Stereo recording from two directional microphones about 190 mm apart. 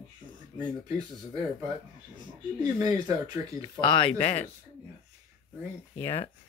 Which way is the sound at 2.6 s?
20° right (ahead or behind).